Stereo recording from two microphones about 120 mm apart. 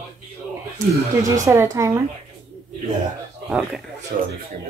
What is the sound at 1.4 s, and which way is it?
Speech, 25° right (ahead or behind).